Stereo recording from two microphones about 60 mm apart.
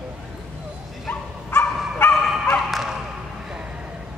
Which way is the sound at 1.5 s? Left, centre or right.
Left.